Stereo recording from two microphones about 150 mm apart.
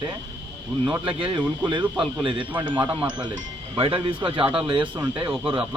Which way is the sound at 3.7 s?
35° right (ahead or behind).